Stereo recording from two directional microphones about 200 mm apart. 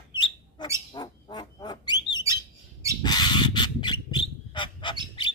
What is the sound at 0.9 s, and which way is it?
Frog, 20° left (ahead or behind).